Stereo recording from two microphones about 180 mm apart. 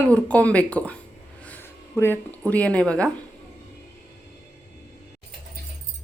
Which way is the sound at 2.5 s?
5° left (ahead or behind).